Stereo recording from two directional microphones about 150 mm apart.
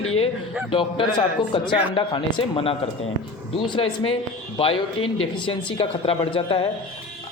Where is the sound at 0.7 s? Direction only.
35° left (ahead or behind).